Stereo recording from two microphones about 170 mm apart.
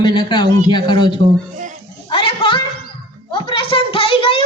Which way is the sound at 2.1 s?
30° left (ahead or behind).